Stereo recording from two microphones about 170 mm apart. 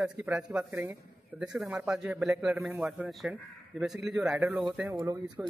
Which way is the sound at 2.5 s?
15° right (ahead or behind).